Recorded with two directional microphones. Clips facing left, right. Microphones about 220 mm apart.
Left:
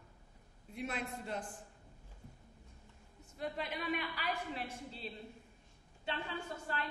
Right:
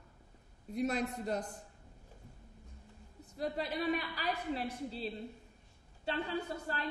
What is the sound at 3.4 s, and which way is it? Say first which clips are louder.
A woman's voice: right 5 dB; 35° right (ahead or behind).